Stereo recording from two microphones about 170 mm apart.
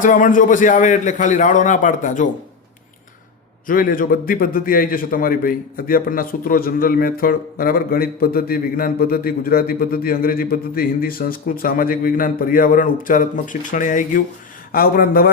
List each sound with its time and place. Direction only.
0.0 s a man's voice: 50° left (ahead or behind)
3.7 s a man's voice: 55° left (ahead or behind)